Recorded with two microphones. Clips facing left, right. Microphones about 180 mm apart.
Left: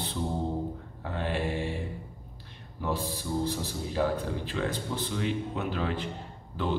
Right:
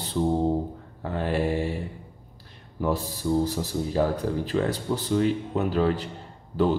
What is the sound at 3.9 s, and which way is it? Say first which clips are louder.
Speech: right 4 dB; 40° right (ahead or behind).